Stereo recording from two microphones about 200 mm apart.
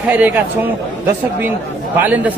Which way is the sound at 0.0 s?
10° right (ahead or behind).